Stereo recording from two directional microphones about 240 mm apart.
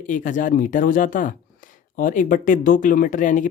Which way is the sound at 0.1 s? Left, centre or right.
Left.